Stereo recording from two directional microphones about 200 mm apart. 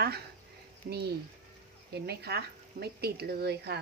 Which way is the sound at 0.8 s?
50° right (ahead or behind).